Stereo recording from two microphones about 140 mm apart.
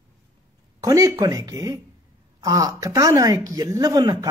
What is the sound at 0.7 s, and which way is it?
Speech, 25° right (ahead or behind).